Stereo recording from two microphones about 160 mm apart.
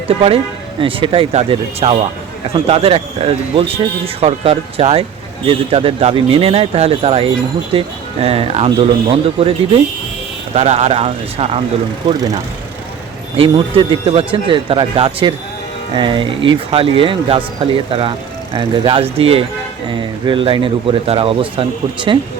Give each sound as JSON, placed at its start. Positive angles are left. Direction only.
{"t": 0.8, "sound": "speech", "side_deg": -35}
{"t": 13.3, "sound": "speech", "side_deg": -35}